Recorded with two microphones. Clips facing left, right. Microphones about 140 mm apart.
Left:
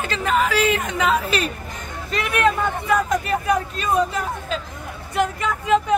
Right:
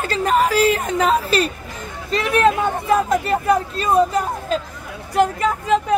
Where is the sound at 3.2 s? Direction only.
30° right (ahead or behind).